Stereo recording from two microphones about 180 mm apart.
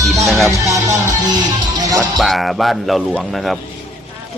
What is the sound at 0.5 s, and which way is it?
Music, 15° right (ahead or behind).